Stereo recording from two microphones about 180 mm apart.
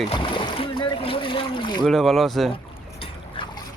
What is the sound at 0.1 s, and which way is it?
Splash, 30° left (ahead or behind).